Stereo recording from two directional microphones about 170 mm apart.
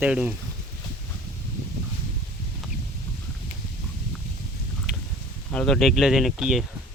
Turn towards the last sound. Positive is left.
turn(degrees=0)  # may be behind; listen again after turning